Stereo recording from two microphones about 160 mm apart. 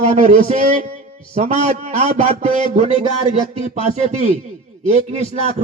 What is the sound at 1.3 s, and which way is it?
A man's voice, 40° right (ahead or behind).